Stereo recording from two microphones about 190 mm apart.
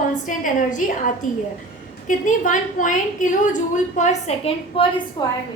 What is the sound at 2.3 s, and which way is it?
A woman's voice, 40° left (ahead or behind).